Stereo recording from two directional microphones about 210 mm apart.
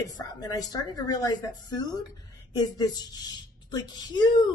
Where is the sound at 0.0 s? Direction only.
20° left (ahead or behind).